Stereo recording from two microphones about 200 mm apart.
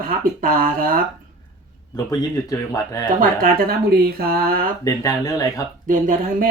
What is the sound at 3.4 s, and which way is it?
Speech, 50° right (ahead or behind).